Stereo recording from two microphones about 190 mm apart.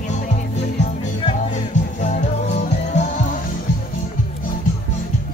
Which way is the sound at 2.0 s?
40° left (ahead or behind).